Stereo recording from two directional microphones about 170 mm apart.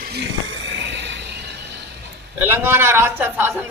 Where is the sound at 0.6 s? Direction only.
90° right.